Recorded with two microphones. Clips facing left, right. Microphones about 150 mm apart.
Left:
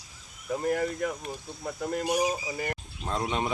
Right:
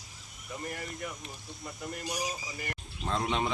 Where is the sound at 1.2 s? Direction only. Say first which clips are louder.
Left 8 dB; 75° left (ahead or behind); by 2.3 s 55° left (ahead or behind).